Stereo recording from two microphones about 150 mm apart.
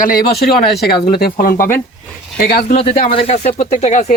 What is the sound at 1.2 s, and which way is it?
Speech, 70° left (ahead or behind).